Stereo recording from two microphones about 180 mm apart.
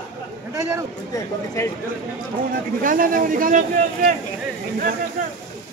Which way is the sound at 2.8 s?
50° right (ahead or behind).